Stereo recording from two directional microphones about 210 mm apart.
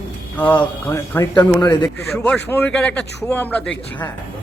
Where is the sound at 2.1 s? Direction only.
5° left (ahead or behind).